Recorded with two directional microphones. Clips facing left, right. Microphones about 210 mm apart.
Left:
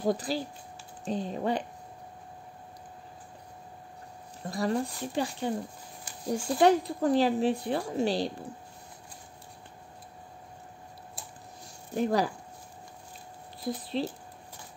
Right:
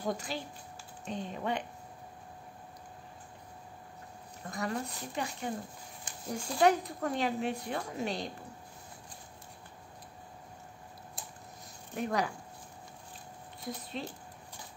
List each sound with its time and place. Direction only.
0.0 s speech: 35° left (ahead or behind)
4.5 s speech: 30° left (ahead or behind)
11.9 s speech: 35° left (ahead or behind)
13.7 s speech: 30° left (ahead or behind)